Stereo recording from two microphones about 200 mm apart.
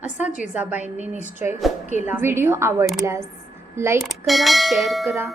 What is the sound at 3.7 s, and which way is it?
Speech, 15° right (ahead or behind).